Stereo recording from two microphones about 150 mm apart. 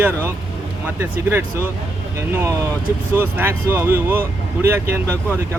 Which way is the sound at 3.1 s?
15° right (ahead or behind).